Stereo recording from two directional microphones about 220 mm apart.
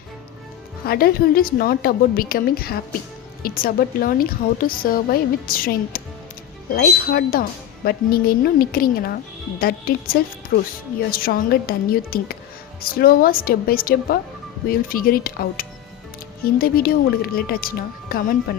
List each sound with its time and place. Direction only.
0.9 s a woman's voice: 45° left (ahead or behind)